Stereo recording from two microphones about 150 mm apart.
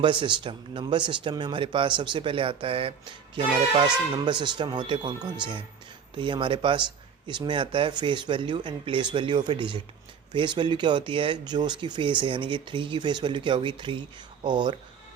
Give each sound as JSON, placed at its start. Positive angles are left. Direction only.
{"t": 0.0, "sound": "speech", "side_deg": -35}